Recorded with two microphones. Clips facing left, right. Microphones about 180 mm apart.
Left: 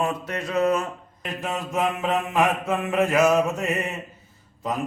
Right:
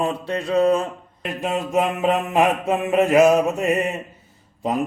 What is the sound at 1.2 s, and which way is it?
Mantra, 60° right (ahead or behind).